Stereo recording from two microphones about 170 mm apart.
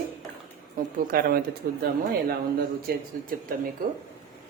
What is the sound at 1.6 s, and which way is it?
Speech, 75° right (ahead or behind).